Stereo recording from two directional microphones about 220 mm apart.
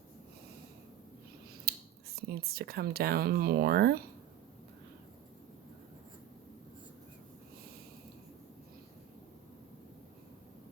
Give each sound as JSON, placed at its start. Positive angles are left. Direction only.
{"t": 2.1, "sound": "speech", "side_deg": -45}